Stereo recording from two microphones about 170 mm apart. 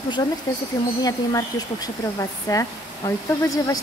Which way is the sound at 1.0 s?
20° left (ahead or behind).